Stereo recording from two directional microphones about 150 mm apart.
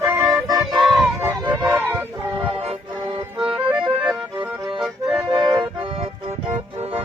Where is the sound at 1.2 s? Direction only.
15° right (ahead or behind).